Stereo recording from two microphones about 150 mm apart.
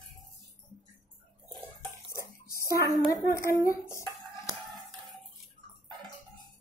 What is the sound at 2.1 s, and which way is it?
Bathtub, 20° left (ahead or behind).